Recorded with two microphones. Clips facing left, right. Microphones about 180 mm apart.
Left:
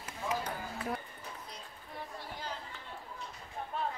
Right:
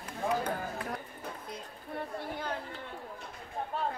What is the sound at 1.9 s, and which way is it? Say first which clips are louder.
Speech: right 7 dB; 55° right (ahead or behind).